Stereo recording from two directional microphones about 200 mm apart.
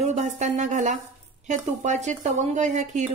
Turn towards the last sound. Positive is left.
turn(degrees=-35)  # may be behind; listen again after turning